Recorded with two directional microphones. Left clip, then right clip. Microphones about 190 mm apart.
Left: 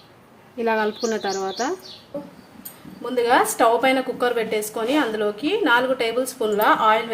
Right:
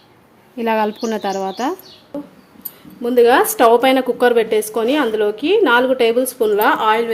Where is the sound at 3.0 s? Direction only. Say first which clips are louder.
Right 7 dB; 50° right (ahead or behind).